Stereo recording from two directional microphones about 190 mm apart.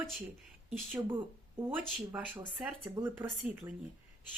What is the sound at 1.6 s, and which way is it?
Speech, 10° right (ahead or behind).